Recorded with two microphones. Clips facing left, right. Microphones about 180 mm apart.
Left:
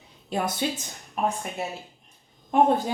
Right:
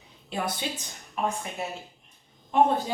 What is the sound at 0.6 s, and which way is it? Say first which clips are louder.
Speech: left 6 dB; 50° left (ahead or behind).